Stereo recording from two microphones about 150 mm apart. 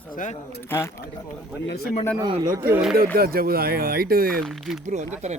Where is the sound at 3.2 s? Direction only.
85° right.